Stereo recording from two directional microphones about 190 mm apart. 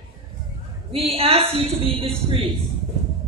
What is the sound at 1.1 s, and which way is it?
A woman's voice, 30° right (ahead or behind).